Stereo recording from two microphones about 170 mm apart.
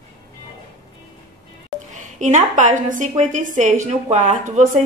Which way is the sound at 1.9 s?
45° right (ahead or behind).